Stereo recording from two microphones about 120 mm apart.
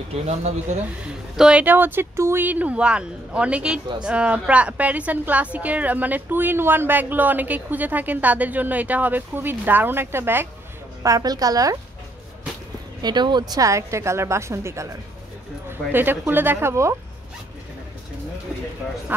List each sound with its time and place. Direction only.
0.1 s speech: 65° right (ahead or behind)
1.0 s speech: 5° right (ahead or behind)
11.0 s a woman's voice: 30° right (ahead or behind)
13.0 s a woman's voice: 40° right (ahead or behind); by 16.9 s 20° right (ahead or behind)